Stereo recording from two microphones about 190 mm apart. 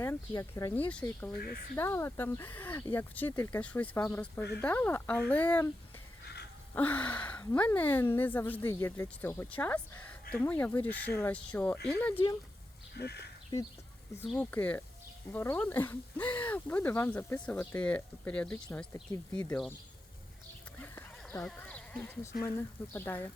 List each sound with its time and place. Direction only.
0.0 s speech: 15° left (ahead or behind)
6.7 s speech: 10° left (ahead or behind)
13.0 s speech: 60° left (ahead or behind)
14.3 s speech: 10° left (ahead or behind)
20.8 s a sound: 10° left (ahead or behind)
21.4 s speech: 5° left (ahead or behind)